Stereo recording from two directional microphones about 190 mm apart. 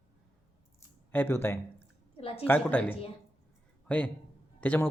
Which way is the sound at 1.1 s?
10° left (ahead or behind).